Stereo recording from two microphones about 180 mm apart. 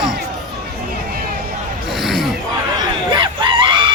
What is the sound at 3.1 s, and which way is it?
Screaming, 25° right (ahead or behind).